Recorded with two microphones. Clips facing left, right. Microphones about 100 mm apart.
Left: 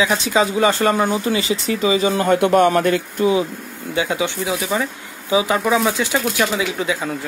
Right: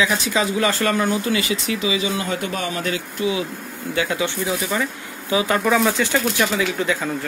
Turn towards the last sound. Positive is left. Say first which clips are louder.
# even
turn(degrees=15)  # may be behind; listen again after turning